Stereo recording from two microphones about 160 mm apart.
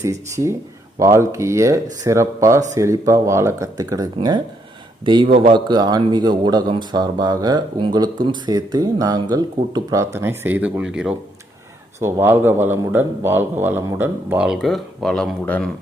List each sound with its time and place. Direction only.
0.0 s a man's voice: 20° right (ahead or behind)
11.9 s a man's voice: 15° right (ahead or behind); by 15.7 s 5° left (ahead or behind)